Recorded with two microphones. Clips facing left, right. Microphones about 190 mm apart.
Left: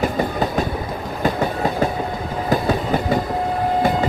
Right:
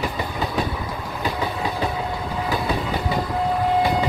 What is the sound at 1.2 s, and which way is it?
Train, 45° left (ahead or behind).